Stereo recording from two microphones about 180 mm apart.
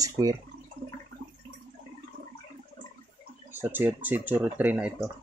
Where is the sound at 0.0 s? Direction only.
20° right (ahead or behind).